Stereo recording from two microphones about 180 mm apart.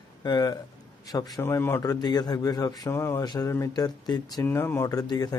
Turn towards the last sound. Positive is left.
turn(degrees=20)  # may be behind; listen again after turning